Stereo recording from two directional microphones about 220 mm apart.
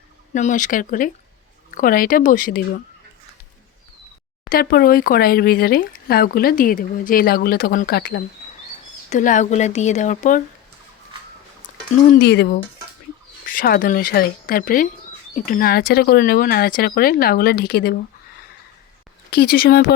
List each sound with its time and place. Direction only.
0.3 s speech: 35° left (ahead or behind)
4.4 s speech: 40° left (ahead or behind)
9.0 s speech: 35° left (ahead or behind)
12.0 s speech: 45° left (ahead or behind)
13.5 s speech: 40° left (ahead or behind)
19.3 s speech: 45° left (ahead or behind)